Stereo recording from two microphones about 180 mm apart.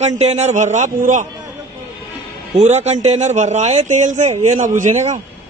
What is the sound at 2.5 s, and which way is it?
A man's voice, 40° right (ahead or behind).